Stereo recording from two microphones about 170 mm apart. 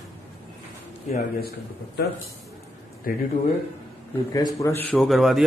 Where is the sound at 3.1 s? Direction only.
55° left (ahead or behind).